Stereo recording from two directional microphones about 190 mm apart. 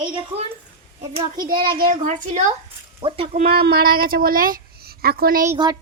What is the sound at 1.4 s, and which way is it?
A woman's voice, 50° right (ahead or behind).